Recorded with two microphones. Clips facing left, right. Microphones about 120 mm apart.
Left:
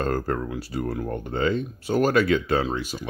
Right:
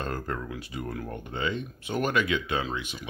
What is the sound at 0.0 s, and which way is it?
Speech, 40° left (ahead or behind).